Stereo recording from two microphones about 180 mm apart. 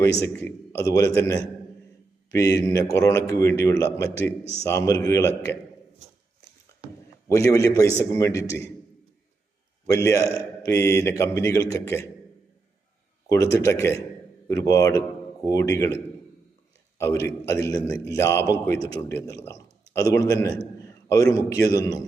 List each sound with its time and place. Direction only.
0.3 s a man's voice: 10° left (ahead or behind)
7.3 s a man's voice: 15° left (ahead or behind)
9.8 s a man's voice: 15° left (ahead or behind)
13.2 s a man's voice: 15° left (ahead or behind)
17.2 s a man's voice: 15° left (ahead or behind)